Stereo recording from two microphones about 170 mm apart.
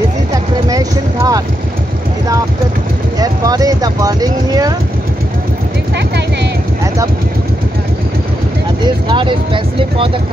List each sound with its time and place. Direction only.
0.7 s a sound: 20° right (ahead or behind)
3.2 s speech: 20° right (ahead or behind)
8.8 s speech: 30° right (ahead or behind)